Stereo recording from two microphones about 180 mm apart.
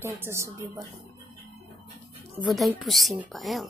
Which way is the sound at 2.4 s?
5° right (ahead or behind).